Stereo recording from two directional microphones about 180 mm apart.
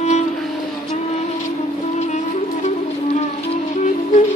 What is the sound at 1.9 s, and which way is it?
Music, 40° left (ahead or behind).